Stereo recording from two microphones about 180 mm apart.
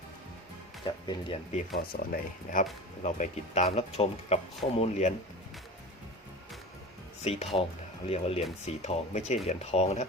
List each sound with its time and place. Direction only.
0.9 s speech: 25° left (ahead or behind)
1.9 s speech: 50° left (ahead or behind)
7.3 s speech: 35° left (ahead or behind)